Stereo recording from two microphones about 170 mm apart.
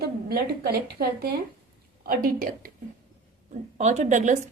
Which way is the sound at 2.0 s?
60° right (ahead or behind).